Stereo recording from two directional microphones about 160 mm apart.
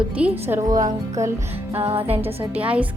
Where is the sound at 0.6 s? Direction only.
25° right (ahead or behind).